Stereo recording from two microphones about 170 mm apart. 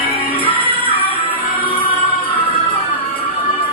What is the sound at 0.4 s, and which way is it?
Music, 30° left (ahead or behind).